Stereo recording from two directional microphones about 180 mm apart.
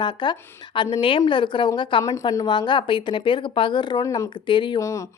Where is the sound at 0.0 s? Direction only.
25° left (ahead or behind).